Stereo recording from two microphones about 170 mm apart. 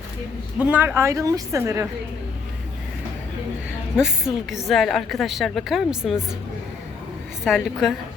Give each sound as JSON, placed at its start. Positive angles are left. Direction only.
{"t": 0.6, "sound": "a woman's voice", "side_deg": -10}
{"t": 3.9, "sound": "a woman's voice", "side_deg": -5}
{"t": 7.4, "sound": "a woman's voice", "side_deg": 0}